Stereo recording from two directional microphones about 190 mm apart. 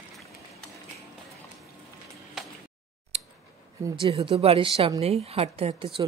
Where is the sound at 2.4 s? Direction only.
Centre (ahead or behind).